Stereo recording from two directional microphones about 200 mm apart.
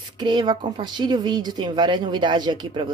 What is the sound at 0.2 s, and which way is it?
Speech, 20° right (ahead or behind).